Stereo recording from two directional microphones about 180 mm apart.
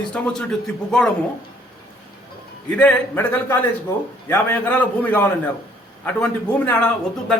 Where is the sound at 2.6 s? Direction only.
10° left (ahead or behind).